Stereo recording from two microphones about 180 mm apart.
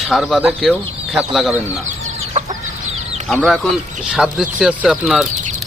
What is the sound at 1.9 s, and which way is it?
Chicken, 35° right (ahead or behind).